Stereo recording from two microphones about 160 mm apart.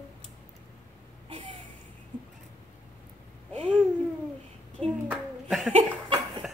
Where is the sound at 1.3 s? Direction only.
35° right (ahead or behind).